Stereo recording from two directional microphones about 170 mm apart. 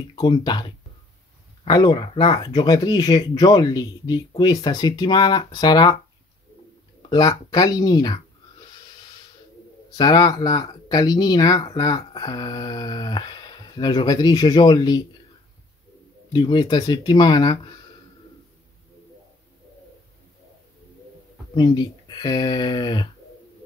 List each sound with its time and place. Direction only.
0.1 s speech: 25° left (ahead or behind)
7.1 s speech: 20° left (ahead or behind)
9.8 s speech: 25° left (ahead or behind)
16.3 s speech: 25° left (ahead or behind)
21.5 s speech: 25° left (ahead or behind)